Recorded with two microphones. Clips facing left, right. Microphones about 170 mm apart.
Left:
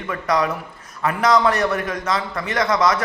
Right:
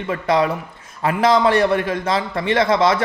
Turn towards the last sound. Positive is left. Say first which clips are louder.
# right 3 dB
turn(degrees=-30)  # may be behind; listen again after turning